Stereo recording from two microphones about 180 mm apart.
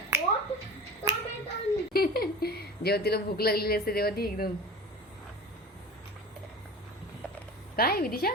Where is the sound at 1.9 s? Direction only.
55° left (ahead or behind).